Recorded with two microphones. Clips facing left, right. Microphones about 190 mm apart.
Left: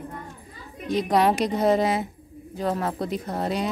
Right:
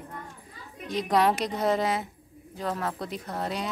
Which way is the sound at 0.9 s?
10° left (ahead or behind).